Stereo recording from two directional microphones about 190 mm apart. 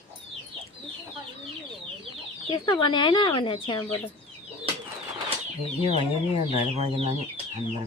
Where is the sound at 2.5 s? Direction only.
25° left (ahead or behind).